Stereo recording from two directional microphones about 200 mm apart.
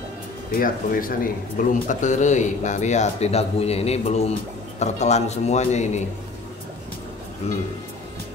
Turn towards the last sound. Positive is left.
turn(degrees=30)  # may be behind; listen again after turning